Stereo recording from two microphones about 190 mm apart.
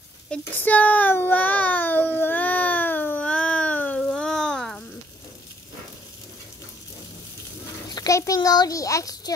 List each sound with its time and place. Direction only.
0.3 s child singing: 10° left (ahead or behind)
7.9 s a child's voice: 20° left (ahead or behind)